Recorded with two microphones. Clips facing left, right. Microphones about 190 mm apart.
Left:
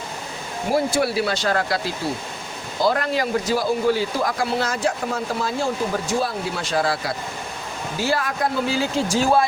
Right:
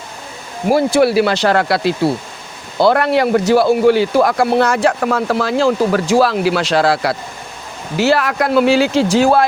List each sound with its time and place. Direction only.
0.7 s speech: 75° right (ahead or behind)